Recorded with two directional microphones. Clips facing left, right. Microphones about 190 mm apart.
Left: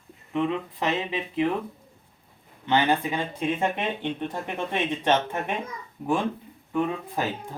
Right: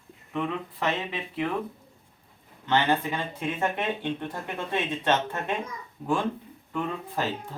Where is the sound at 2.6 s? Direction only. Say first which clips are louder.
Left 2 dB; 15° left (ahead or behind).